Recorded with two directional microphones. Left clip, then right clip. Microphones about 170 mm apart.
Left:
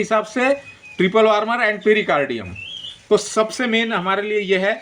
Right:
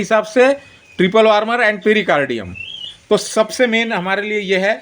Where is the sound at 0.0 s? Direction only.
40° right (ahead or behind).